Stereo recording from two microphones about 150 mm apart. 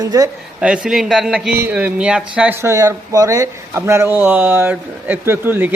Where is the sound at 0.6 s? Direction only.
5° right (ahead or behind).